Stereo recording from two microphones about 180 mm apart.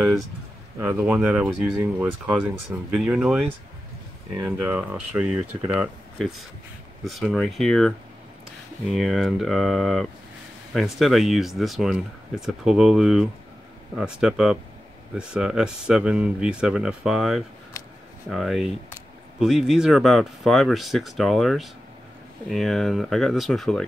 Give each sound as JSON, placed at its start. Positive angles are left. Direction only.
{"t": 0.8, "sound": "speech", "side_deg": -10}
{"t": 4.5, "sound": "speech", "side_deg": -5}
{"t": 8.9, "sound": "speech", "side_deg": 0}
{"t": 17.8, "sound": "a sound", "side_deg": 20}
{"t": 18.3, "sound": "speech", "side_deg": 0}